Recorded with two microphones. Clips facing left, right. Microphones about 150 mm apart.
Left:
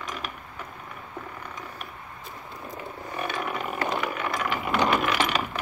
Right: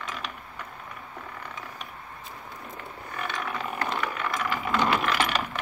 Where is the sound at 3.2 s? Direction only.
15° left (ahead or behind).